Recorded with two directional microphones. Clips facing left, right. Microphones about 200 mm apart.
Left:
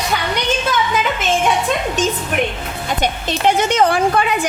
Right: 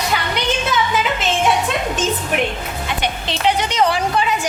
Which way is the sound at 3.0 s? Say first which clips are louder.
Left 3 dB; 45° left (ahead or behind).